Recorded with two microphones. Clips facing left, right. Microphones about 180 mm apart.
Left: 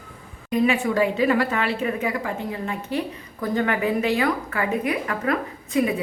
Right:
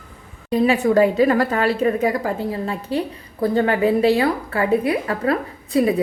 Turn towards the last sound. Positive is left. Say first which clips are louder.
# right 4 dB
turn(degrees=-35)  # may be behind; listen again after turning